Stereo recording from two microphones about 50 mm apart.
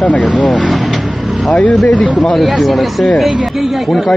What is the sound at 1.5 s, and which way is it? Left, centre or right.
Speech, left.